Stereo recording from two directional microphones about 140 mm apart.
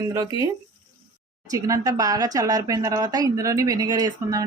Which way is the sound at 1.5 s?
25° right (ahead or behind).